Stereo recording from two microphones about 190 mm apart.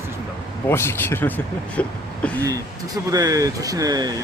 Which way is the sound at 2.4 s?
20° right (ahead or behind).